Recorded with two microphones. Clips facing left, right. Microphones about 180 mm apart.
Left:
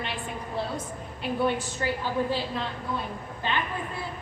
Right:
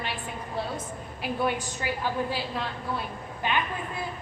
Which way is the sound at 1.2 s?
10° right (ahead or behind).